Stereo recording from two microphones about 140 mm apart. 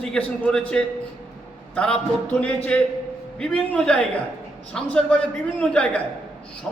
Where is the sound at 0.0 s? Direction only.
10° left (ahead or behind).